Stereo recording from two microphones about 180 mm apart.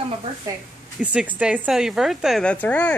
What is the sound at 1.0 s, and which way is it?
Speech, 5° right (ahead or behind).